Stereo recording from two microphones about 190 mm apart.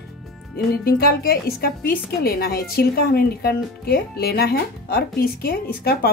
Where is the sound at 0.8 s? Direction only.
50° left (ahead or behind).